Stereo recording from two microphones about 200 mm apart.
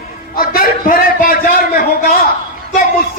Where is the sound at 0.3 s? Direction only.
45° left (ahead or behind).